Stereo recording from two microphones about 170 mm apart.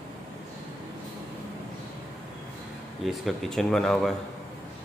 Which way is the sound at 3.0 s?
Centre (ahead or behind).